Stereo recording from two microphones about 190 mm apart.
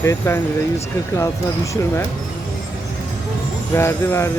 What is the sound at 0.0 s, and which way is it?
Jingle bell, 15° left (ahead or behind).